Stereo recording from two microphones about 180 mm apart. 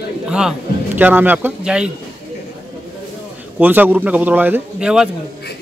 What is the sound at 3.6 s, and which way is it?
A man's voice, 10° right (ahead or behind).